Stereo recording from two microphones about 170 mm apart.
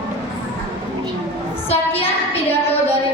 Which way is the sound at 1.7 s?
35° left (ahead or behind).